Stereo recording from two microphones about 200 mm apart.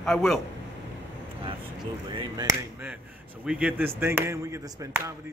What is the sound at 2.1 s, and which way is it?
Speech, 20° right (ahead or behind).